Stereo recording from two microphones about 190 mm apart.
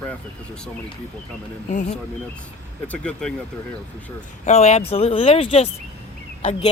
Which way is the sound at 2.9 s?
5° left (ahead or behind).